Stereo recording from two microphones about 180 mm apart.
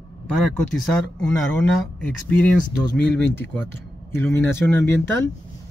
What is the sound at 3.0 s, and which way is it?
Speech, 10° left (ahead or behind).